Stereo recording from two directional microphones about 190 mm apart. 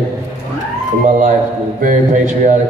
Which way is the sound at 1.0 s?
45° right (ahead or behind).